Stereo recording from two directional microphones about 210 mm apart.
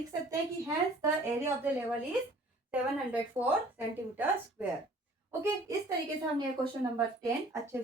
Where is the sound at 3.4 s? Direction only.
10° right (ahead or behind).